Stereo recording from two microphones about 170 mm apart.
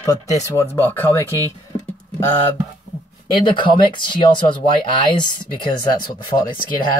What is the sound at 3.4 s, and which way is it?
Speech, 30° left (ahead or behind).